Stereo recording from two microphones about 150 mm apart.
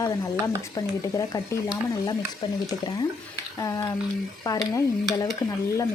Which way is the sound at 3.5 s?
20° left (ahead or behind).